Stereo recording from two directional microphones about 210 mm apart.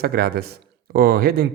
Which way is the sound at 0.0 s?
45° right (ahead or behind).